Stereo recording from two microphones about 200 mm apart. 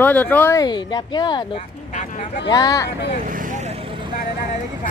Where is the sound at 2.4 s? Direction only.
20° left (ahead or behind).